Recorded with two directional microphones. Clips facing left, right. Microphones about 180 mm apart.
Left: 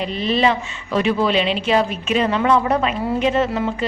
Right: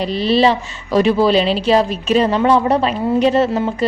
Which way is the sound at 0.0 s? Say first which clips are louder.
Right 4 dB; 35° right (ahead or behind).